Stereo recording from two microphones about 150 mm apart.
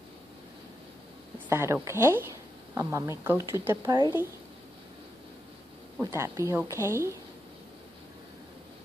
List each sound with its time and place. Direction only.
1.5 s a woman's voice: 20° right (ahead or behind)
5.9 s speech: 15° right (ahead or behind)